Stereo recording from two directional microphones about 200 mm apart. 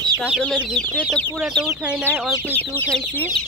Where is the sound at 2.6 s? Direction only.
10° left (ahead or behind).